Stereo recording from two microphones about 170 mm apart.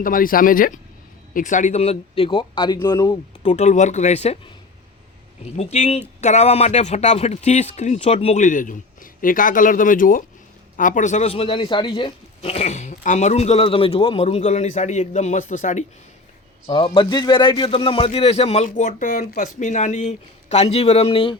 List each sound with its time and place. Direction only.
0.0 s speech: 55° left (ahead or behind); by 3.5 s 25° left (ahead or behind)
3.5 s speech: 40° left (ahead or behind)
5.5 s speech: 40° left (ahead or behind)
16.6 s speech: 30° left (ahead or behind)